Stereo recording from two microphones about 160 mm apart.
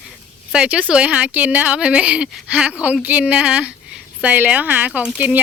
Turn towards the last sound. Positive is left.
turn(degrees=-10)  # may be behind; listen again after turning